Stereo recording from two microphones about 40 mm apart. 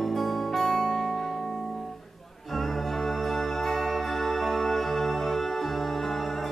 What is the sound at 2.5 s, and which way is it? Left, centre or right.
Music, centre.